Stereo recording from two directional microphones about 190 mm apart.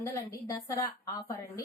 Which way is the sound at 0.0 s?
15° left (ahead or behind).